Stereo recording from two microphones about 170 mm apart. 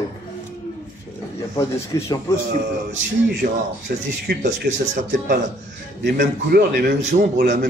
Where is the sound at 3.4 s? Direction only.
60° right (ahead or behind).